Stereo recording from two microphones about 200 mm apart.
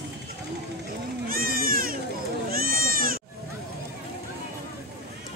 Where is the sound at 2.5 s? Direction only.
45° right (ahead or behind).